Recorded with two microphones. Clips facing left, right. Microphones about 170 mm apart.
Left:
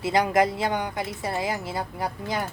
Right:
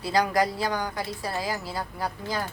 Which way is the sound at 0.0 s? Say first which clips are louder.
Left 2 dB; 20° left (ahead or behind).